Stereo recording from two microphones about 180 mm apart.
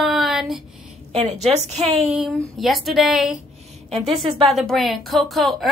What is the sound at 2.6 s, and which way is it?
Speech, centre (ahead or behind).